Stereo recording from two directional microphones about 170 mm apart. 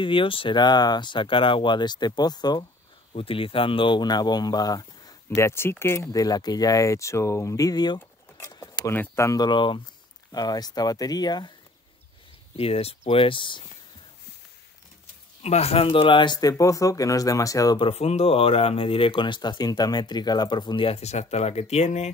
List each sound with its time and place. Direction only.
0.0 s speech: 30° left (ahead or behind)
12.5 s speech: 35° left (ahead or behind)
15.4 s speech: 40° left (ahead or behind); by 17.8 s 20° left (ahead or behind)
17.8 s speech: 35° left (ahead or behind)